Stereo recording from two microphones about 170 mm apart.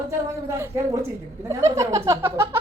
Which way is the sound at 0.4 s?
15° right (ahead or behind).